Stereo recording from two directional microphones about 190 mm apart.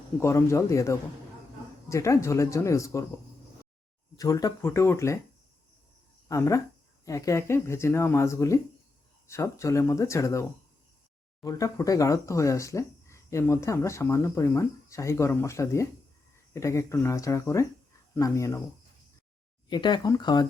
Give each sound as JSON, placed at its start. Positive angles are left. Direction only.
{"t": 0.2, "sound": "speech", "side_deg": 15}
{"t": 4.2, "sound": "speech", "side_deg": 20}
{"t": 6.2, "sound": "speech", "side_deg": 15}
{"t": 11.4, "sound": "speech", "side_deg": 15}
{"t": 19.7, "sound": "speech", "side_deg": 25}